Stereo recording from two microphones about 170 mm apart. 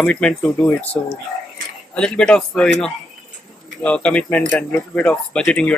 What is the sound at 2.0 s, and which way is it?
Speech, 5° left (ahead or behind).